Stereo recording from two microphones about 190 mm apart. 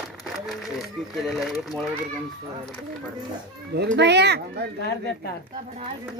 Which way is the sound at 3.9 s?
65° right (ahead or behind).